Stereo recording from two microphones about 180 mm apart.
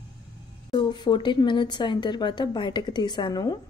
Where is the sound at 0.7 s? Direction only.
25° left (ahead or behind).